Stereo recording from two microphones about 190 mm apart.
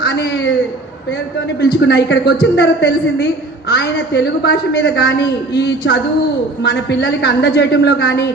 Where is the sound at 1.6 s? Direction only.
65° left (ahead or behind).